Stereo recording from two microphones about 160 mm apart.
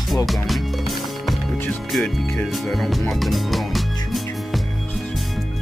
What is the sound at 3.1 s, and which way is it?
Music, centre (ahead or behind).